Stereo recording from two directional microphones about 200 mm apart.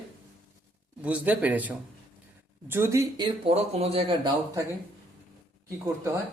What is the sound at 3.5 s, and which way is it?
Speech, 30° right (ahead or behind).